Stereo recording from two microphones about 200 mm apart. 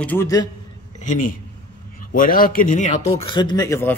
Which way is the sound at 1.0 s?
40° left (ahead or behind).